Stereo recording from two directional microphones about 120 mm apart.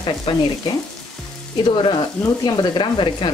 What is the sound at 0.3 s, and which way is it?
Frying, 45° left (ahead or behind).